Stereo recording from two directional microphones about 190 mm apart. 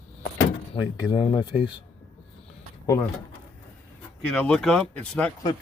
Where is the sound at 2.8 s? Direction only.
15° left (ahead or behind).